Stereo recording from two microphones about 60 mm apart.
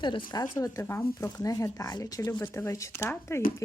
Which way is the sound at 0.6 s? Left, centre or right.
Left.